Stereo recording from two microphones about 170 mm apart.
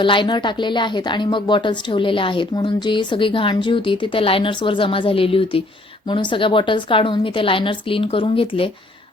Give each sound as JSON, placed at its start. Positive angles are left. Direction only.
{"t": 0.0, "sound": "a woman's voice", "side_deg": 30}